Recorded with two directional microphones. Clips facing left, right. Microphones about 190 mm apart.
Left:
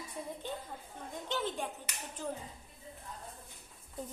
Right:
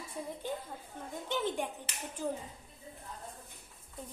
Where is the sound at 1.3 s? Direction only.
15° right (ahead or behind).